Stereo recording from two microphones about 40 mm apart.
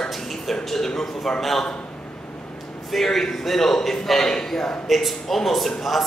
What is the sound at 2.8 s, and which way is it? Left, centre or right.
A man's voice, centre.